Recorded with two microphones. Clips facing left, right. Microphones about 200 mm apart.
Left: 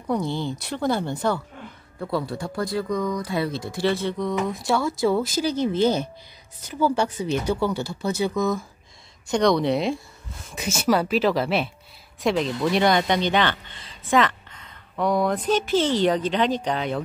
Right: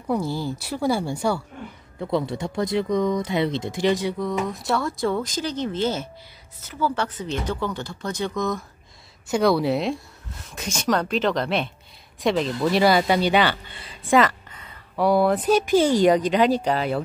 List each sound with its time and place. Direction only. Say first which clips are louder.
0.0 s speech: even; 5° right (ahead or behind)
2.0 s speech: right 2 dB; 20° right (ahead or behind)
4.2 s speech: left 1 dB; centre (ahead or behind)